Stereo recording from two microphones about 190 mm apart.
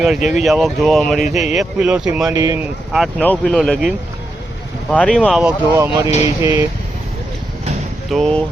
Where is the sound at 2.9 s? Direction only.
5° left (ahead or behind).